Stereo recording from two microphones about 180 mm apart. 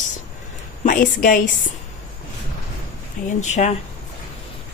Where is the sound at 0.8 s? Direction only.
50° left (ahead or behind).